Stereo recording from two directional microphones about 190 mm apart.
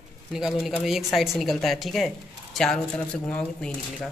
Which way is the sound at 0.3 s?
Centre (ahead or behind).